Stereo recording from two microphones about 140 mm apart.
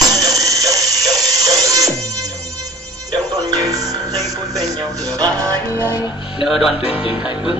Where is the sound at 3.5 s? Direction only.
25° right (ahead or behind).